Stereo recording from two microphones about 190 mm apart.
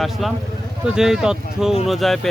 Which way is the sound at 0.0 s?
Centre (ahead or behind).